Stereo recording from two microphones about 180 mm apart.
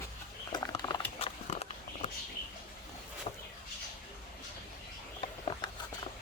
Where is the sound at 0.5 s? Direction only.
20° left (ahead or behind).